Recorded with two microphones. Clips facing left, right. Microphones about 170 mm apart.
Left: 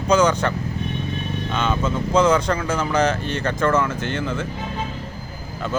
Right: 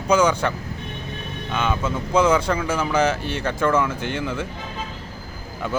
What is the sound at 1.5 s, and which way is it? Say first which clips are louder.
Speech: left 1 dB; 10° right (ahead or behind).